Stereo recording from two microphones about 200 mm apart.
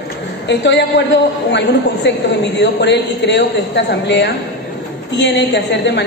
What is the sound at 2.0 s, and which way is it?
A woman's voice, 60° left (ahead or behind).